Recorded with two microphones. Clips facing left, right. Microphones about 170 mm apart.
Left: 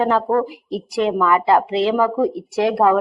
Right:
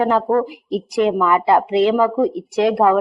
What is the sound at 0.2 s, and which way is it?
Speech, 10° left (ahead or behind).